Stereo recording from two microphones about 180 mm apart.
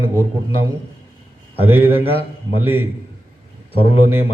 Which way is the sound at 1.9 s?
30° left (ahead or behind).